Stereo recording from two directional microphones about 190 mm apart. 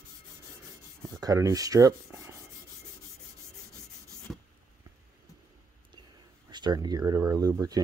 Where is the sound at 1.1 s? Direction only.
15° right (ahead or behind).